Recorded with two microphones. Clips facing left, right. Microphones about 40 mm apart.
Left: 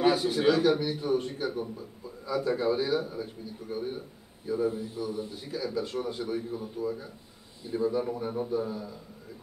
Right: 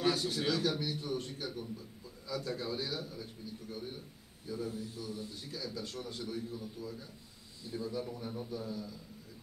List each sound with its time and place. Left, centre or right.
0.0 s a man's voice: centre